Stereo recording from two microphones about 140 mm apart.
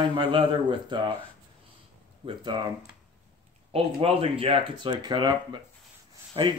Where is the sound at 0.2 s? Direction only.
40° right (ahead or behind).